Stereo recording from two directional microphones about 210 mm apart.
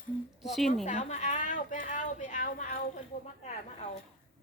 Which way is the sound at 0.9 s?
35° left (ahead or behind).